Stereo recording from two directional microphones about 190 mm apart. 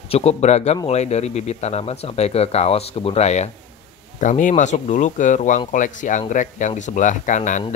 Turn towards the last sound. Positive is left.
turn(degrees=40)  # may be behind; listen again after turning